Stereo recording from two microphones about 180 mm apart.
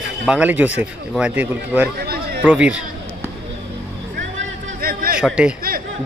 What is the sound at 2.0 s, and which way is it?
Chatter, 60° right (ahead or behind).